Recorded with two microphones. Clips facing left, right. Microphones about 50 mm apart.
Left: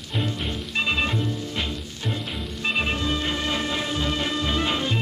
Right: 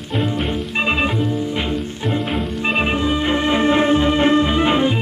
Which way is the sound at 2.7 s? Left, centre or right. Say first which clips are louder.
Right 7 dB; right.